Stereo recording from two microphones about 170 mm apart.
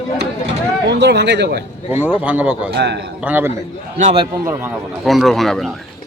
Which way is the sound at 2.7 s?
90° right.